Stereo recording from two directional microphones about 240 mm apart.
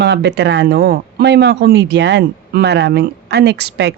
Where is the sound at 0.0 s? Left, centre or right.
Right.